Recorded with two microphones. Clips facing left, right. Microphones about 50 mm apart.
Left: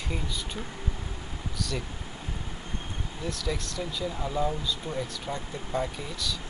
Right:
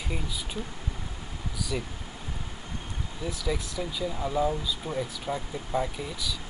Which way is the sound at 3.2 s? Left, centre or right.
Centre.